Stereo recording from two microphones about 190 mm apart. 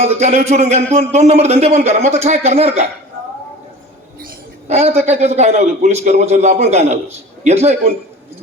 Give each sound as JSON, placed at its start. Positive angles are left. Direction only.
{"t": 0.0, "sound": "speech", "side_deg": -35}
{"t": 4.7, "sound": "speech", "side_deg": -35}